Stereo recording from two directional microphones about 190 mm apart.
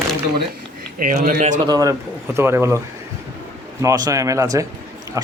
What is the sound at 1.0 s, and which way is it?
Speech, 45° right (ahead or behind).